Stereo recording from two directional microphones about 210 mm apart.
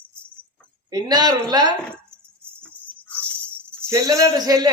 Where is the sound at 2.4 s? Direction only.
5° left (ahead or behind).